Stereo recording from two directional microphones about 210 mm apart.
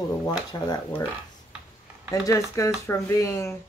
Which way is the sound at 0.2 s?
15° left (ahead or behind).